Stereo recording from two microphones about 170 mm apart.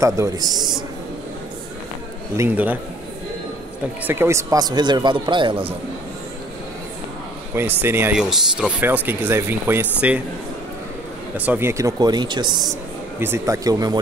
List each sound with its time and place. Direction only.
0.0 s speech: 15° right (ahead or behind)
2.3 s speech: 10° right (ahead or behind)
4.1 s speech: 15° right (ahead or behind)
7.8 s speech: 15° right (ahead or behind)
11.3 s speech: 10° right (ahead or behind); by 12.7 s 25° right (ahead or behind)
13.2 s speech: 15° right (ahead or behind)